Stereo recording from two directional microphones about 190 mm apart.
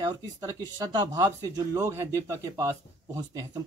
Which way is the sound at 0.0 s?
20° right (ahead or behind).